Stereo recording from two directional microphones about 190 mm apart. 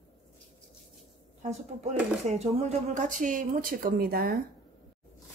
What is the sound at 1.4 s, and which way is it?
Speech, 35° right (ahead or behind).